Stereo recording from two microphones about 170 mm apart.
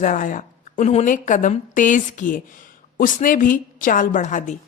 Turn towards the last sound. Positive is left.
turn(degrees=45)  # may be behind; listen again after turning